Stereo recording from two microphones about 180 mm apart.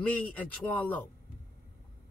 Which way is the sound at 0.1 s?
10° left (ahead or behind).